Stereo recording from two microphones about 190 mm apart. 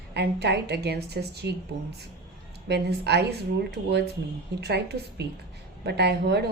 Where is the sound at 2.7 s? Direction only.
60° right (ahead or behind).